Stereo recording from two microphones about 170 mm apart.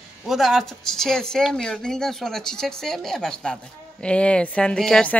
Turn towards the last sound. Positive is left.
turn(degrees=5)  # may be behind; listen again after turning